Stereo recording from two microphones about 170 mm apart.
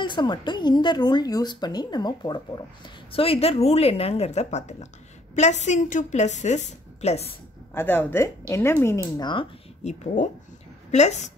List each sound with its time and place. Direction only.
0.0 s a woman's voice: 25° left (ahead or behind)
7.7 s speech: 10° left (ahead or behind); by 9.5 s 25° left (ahead or behind)
9.8 s speech: 40° left (ahead or behind)